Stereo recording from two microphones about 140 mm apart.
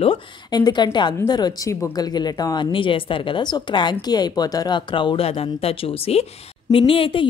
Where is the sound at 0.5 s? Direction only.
30° left (ahead or behind).